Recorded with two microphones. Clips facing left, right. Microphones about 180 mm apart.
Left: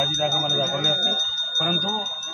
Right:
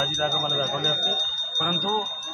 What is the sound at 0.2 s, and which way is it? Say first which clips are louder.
Speech: left 2 dB; 20° left (ahead or behind).